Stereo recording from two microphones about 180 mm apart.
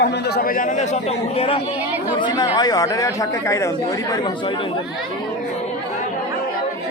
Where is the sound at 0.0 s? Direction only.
65° left (ahead or behind); by 1.5 s 35° left (ahead or behind).